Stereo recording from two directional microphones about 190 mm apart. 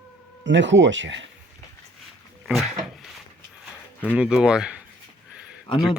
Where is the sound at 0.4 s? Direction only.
75° right (ahead or behind).